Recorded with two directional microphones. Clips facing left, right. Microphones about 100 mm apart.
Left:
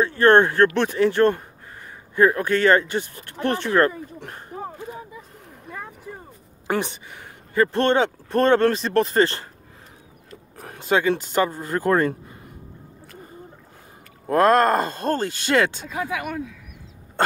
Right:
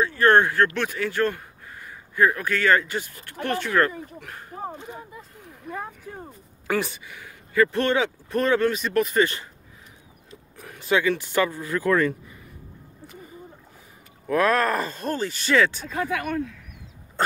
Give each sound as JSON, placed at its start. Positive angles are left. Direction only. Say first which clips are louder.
{"t": 0.0, "sound": "speech", "louder": "left 3 dB", "side_deg": 25}
{"t": 6.7, "sound": "speech", "louder": "left 1 dB", "side_deg": 20}
{"t": 10.6, "sound": "speech", "louder": "left 2 dB", "side_deg": 40}
{"t": 14.3, "sound": "speech", "louder": "left 5 dB", "side_deg": 45}
{"t": 15.9, "sound": "speech", "louder": "right 1 dB", "side_deg": 15}